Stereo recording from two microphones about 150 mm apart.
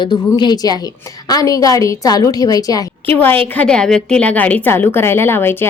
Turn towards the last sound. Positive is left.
turn(degrees=15)  # may be behind; listen again after turning